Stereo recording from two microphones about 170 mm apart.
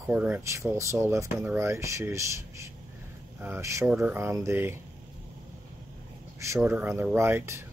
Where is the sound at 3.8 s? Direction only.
5° right (ahead or behind).